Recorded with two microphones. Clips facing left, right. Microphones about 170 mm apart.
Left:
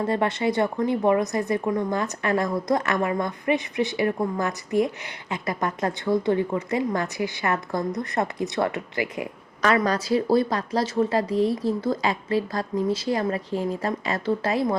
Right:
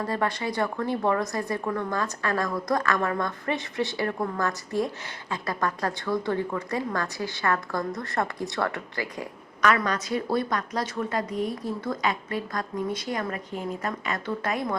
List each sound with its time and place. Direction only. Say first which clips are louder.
0.0 s a woman's voice: left 5 dB; 25° left (ahead or behind)
9.6 s a woman's voice: left 3 dB; 30° left (ahead or behind)